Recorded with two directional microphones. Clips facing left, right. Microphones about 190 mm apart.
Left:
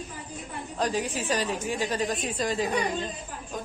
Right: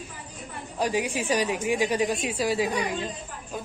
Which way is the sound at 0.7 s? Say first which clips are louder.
Right 2 dB; 10° right (ahead or behind).